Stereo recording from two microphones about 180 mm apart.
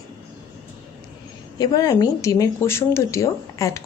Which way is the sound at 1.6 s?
20° left (ahead or behind).